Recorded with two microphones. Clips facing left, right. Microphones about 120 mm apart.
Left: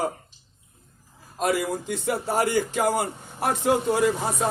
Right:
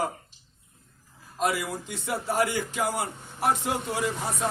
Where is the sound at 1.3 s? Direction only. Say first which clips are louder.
Left 3 dB; 45° left (ahead or behind).